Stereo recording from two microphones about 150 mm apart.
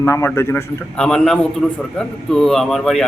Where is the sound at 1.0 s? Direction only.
5° left (ahead or behind).